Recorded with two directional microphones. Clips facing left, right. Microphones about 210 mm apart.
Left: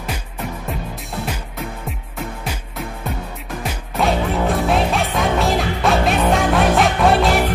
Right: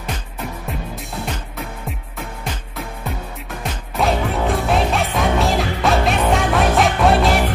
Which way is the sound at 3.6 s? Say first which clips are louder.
Even; centre (ahead or behind).